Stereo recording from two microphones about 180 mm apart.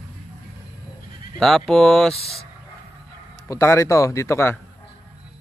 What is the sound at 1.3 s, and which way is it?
Speech, 5° left (ahead or behind).